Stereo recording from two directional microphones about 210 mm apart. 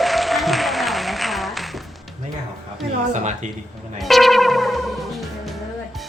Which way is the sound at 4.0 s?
Centre (ahead or behind).